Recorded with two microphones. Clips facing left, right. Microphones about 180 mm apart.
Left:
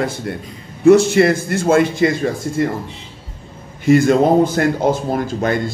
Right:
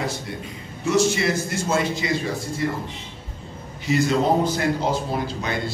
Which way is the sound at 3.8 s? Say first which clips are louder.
Left 8 dB; 50° left (ahead or behind).